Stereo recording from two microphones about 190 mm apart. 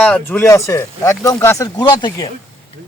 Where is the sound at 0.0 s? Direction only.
10° left (ahead or behind).